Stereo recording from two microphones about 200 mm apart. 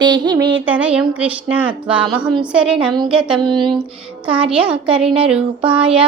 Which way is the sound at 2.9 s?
20° right (ahead or behind).